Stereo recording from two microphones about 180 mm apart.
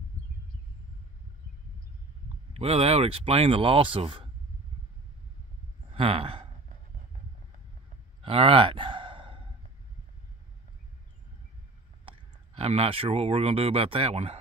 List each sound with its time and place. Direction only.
2.5 s speech: 35° right (ahead or behind)
5.9 s speech: 30° right (ahead or behind)
8.2 s sigh: 30° right (ahead or behind)
12.1 s speech: 35° right (ahead or behind)